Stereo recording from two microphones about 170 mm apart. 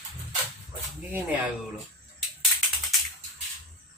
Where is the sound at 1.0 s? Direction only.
10° right (ahead or behind).